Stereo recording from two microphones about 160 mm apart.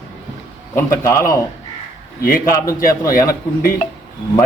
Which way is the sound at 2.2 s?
65° left (ahead or behind).